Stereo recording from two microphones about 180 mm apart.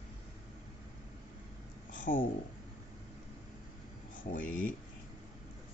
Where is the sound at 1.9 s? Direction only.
45° left (ahead or behind).